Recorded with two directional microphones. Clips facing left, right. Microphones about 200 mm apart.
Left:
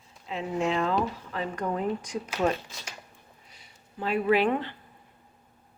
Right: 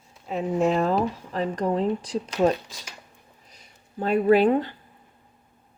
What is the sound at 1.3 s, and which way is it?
Speech, 35° right (ahead or behind).